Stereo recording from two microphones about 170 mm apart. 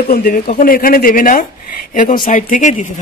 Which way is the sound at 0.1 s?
65° left (ahead or behind).